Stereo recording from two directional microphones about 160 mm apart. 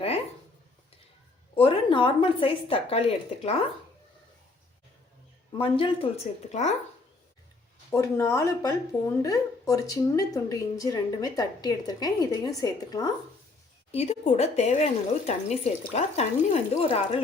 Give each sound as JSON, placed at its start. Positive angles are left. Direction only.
{"t": 1.5, "sound": "a woman's voice", "side_deg": 30}
{"t": 5.5, "sound": "a woman's voice", "side_deg": 30}
{"t": 6.5, "sound": "speech", "side_deg": 45}
{"t": 7.9, "sound": "speech", "side_deg": 15}
{"t": 13.9, "sound": "speech", "side_deg": 40}